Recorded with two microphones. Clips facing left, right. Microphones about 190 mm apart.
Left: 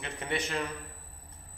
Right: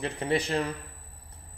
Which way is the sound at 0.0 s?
35° right (ahead or behind).